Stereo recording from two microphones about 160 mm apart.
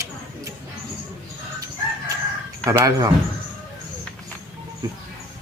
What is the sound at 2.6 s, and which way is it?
Speech, 20° right (ahead or behind).